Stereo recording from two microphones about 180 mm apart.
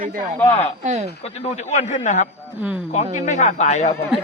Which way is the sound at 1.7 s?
45° left (ahead or behind).